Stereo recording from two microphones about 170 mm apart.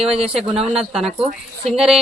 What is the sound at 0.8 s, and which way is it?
Speech, 5° right (ahead or behind).